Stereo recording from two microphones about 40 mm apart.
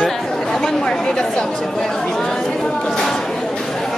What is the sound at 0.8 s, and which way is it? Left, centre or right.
Speech, left.